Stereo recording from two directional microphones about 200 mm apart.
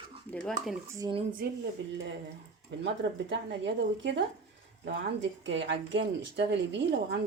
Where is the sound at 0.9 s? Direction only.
20° right (ahead or behind).